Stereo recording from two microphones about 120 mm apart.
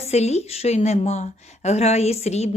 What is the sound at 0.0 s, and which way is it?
A woman's voice, 65° left (ahead or behind).